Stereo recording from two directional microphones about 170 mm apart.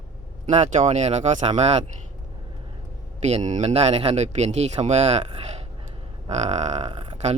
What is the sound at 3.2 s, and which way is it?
Speech, 45° right (ahead or behind).